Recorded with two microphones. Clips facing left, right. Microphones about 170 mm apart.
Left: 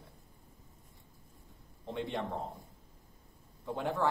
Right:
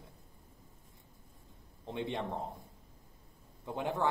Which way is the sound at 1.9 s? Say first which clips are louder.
Even; 20° right (ahead or behind).